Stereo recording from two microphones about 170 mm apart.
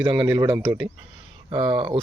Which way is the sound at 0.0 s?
25° right (ahead or behind).